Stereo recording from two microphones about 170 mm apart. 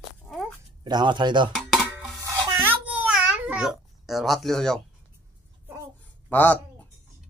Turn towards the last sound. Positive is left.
turn(degrees=10)  # may be behind; listen again after turning